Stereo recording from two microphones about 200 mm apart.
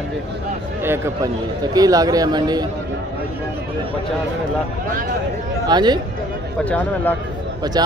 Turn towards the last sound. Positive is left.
turn(degrees=-20)  # may be behind; listen again after turning